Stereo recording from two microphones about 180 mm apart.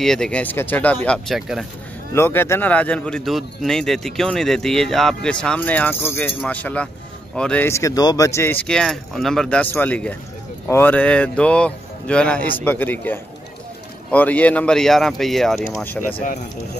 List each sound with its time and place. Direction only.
0.0 s a man's voice: 5° left (ahead or behind)
2.1 s a man's voice: 15° left (ahead or behind)
8.6 s a man's voice: centre (ahead or behind)